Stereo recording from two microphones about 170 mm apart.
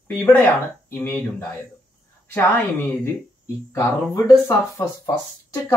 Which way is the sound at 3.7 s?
15° left (ahead or behind).